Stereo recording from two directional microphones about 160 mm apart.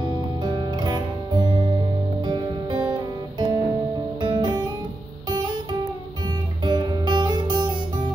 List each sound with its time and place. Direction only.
0.4 s music: 30° right (ahead or behind)
2.9 s guitar: 25° right (ahead or behind)
4.2 s music: 30° right (ahead or behind)
6.6 s guitar: 30° right (ahead or behind)